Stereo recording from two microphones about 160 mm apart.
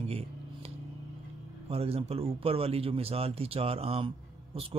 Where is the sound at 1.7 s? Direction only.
40° right (ahead or behind).